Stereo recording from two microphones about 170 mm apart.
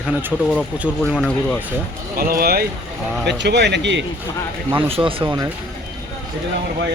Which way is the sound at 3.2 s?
85° right.